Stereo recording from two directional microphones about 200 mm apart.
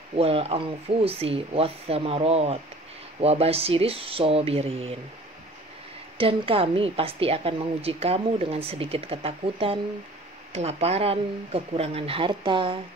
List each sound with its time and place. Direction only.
0.1 s a woman's voice: 30° right (ahead or behind)
6.1 s a woman's voice: 25° right (ahead or behind)